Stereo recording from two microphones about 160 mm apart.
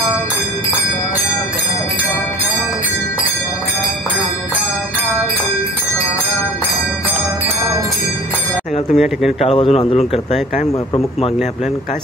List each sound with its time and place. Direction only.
8.9 s speech: centre (ahead or behind)
9.4 s speech: 40° left (ahead or behind)